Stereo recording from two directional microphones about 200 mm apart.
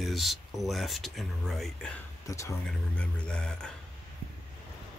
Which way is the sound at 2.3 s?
15° left (ahead or behind).